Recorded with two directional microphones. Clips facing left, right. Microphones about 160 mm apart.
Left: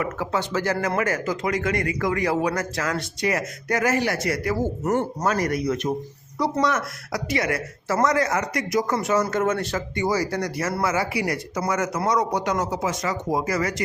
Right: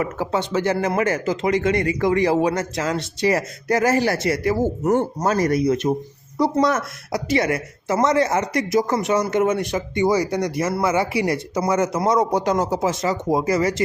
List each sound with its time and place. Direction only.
0.0 s speech: 25° right (ahead or behind)